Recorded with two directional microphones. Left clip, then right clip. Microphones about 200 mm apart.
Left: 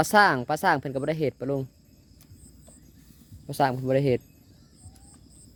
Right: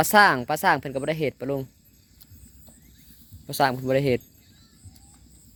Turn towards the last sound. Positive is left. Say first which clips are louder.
# right 1 dB
turn(degrees=15)  # may be behind; listen again after turning